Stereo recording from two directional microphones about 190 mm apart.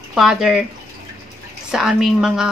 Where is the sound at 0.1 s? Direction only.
5° right (ahead or behind).